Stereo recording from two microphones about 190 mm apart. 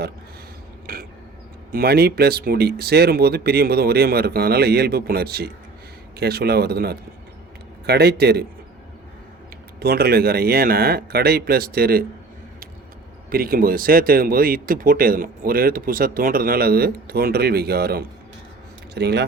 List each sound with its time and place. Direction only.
0.9 s a sound: 50° right (ahead or behind)
1.7 s speech: 55° right (ahead or behind)
9.8 s speech: 55° right (ahead or behind)
13.3 s speech: 50° right (ahead or behind)